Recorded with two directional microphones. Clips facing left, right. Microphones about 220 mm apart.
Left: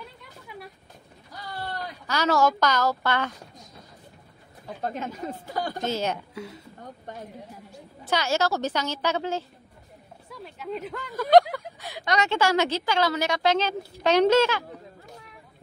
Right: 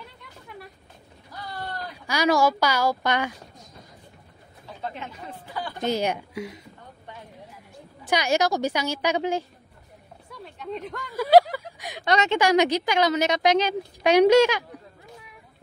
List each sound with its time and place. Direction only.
2.0 s speech: 10° right (ahead or behind)
4.8 s speech: 45° left (ahead or behind)
5.9 s speech: 15° right (ahead or behind)
7.1 s speech: 45° left (ahead or behind)
8.0 s speech: 15° right (ahead or behind)
10.3 s speech: 5° left (ahead or behind)
11.1 s speech: 5° right (ahead or behind)
11.5 s a sound: 10° right (ahead or behind)
12.0 s speech: 25° right (ahead or behind)